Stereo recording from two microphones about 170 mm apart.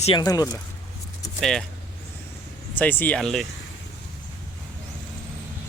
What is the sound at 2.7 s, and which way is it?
Speech, 10° left (ahead or behind).